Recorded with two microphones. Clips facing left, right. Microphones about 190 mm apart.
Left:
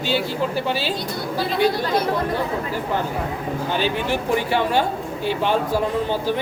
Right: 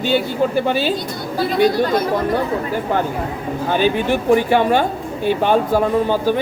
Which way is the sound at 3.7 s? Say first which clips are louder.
Right 6 dB; 50° right (ahead or behind).